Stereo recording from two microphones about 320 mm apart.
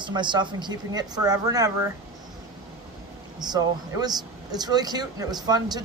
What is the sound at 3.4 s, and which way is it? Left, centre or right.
Speech, centre.